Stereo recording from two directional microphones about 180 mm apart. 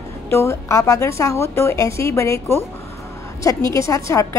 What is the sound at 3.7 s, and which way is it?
Speech, 15° left (ahead or behind).